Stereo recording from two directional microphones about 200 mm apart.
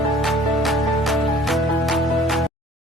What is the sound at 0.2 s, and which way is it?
Music, centre (ahead or behind).